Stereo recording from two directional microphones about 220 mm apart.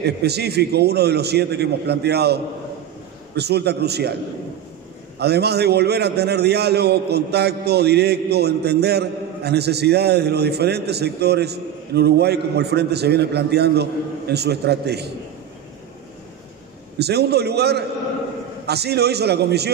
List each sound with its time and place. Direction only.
0.0 s a man's voice: 50° right (ahead or behind)
5.2 s a man's voice: 50° right (ahead or behind)
17.0 s a man's voice: 50° right (ahead or behind)